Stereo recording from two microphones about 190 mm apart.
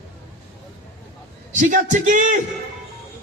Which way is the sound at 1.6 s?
40° right (ahead or behind).